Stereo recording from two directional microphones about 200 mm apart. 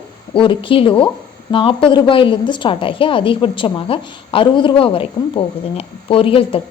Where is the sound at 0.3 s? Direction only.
25° left (ahead or behind).